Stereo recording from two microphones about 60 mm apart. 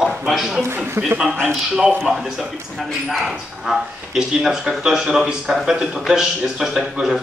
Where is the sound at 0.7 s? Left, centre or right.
Right.